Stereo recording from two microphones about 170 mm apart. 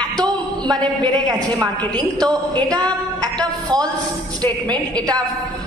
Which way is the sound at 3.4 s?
25° right (ahead or behind).